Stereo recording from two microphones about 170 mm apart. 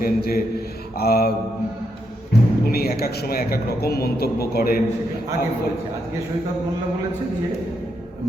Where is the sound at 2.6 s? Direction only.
65° left (ahead or behind).